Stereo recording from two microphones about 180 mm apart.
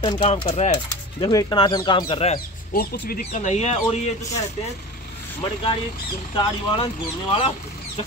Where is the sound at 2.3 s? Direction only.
55° left (ahead or behind); by 3.8 s 40° left (ahead or behind).